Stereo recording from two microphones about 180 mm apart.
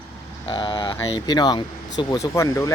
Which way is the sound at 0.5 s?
25° left (ahead or behind).